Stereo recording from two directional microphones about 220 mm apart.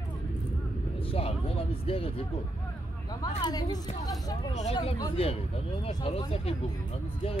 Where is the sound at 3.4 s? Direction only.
15° left (ahead or behind).